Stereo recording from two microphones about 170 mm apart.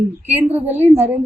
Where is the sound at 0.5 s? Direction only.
10° right (ahead or behind).